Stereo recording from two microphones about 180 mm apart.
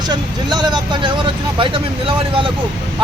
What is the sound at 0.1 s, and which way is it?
Speech, 25° right (ahead or behind).